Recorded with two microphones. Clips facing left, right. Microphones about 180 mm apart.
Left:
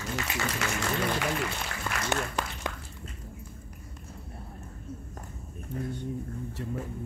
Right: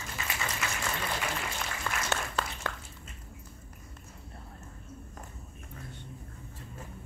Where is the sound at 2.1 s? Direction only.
15° left (ahead or behind).